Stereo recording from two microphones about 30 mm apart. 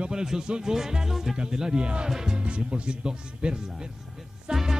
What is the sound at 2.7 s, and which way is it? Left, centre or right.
Speech, right.